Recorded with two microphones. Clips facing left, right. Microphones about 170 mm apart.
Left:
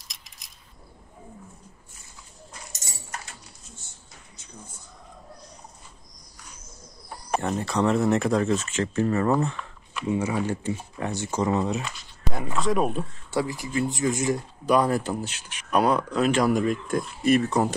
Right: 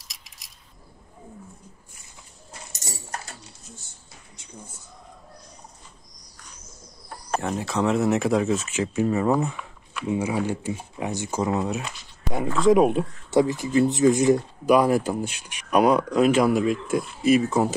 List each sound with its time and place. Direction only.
0.0 s a sound: centre (ahead or behind)
7.3 s speech: centre (ahead or behind)
12.6 s speech: 20° right (ahead or behind); by 17.7 s 5° right (ahead or behind)